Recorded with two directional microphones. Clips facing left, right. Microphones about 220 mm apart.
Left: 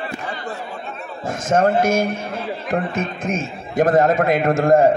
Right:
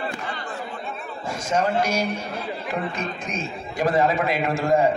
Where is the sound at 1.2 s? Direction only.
50° left (ahead or behind).